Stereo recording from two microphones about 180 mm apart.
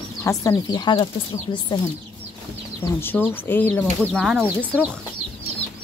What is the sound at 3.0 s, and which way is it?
Speech, 10° left (ahead or behind).